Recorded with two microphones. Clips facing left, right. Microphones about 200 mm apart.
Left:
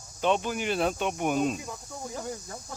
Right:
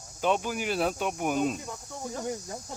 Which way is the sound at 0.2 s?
5° right (ahead or behind).